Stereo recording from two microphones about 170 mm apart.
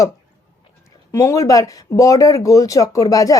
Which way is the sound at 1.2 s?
20° left (ahead or behind).